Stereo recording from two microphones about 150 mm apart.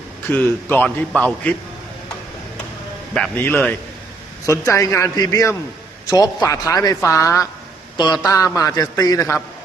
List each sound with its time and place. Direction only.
0.3 s a man's voice: 10° left (ahead or behind)
3.2 s a man's voice: 15° left (ahead or behind)